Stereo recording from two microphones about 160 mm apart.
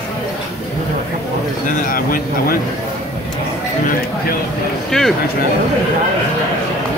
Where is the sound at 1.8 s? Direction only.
65° left (ahead or behind).